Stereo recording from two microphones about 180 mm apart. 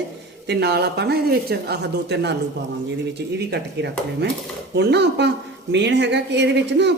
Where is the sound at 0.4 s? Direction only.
70° right (ahead or behind).